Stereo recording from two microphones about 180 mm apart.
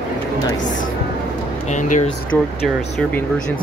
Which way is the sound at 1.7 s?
45° left (ahead or behind).